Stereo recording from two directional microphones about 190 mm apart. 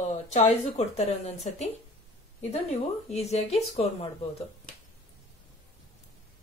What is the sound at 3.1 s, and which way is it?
Speech, 35° left (ahead or behind).